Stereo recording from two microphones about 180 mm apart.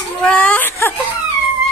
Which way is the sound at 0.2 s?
5° left (ahead or behind).